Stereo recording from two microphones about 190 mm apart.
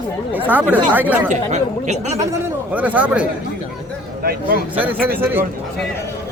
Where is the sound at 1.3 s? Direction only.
40° right (ahead or behind).